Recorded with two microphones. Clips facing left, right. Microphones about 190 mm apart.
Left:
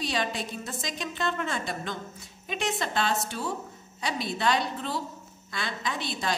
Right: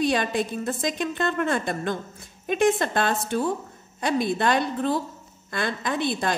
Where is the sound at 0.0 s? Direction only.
55° right (ahead or behind).